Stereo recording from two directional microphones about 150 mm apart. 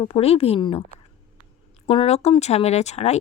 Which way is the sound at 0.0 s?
40° left (ahead or behind).